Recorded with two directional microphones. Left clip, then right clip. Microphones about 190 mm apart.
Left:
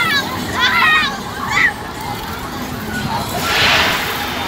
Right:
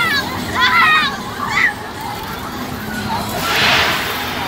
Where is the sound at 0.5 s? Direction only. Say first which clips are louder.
Right 1 dB; 20° left (ahead or behind).